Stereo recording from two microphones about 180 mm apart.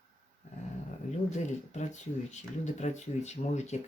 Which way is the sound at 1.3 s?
40° left (ahead or behind).